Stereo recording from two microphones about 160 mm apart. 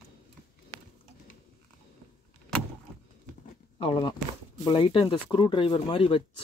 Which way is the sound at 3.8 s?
35° left (ahead or behind).